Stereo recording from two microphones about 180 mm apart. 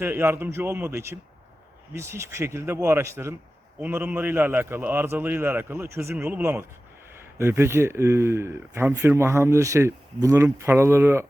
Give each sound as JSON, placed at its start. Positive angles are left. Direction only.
{"t": 0.0, "sound": "speech", "side_deg": -10}